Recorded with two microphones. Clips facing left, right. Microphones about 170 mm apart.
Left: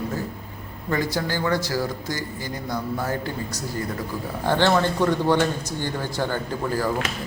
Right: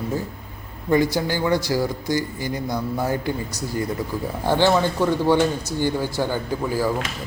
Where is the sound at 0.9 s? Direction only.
15° right (ahead or behind).